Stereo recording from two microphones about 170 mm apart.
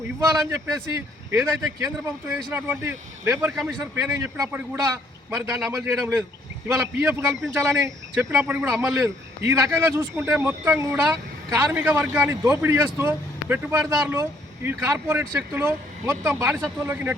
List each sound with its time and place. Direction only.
0.5 s a man's voice: 15° right (ahead or behind)
4.1 s a man's voice: 15° right (ahead or behind)